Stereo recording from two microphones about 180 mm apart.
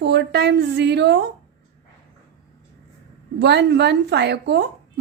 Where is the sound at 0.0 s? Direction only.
70° right (ahead or behind).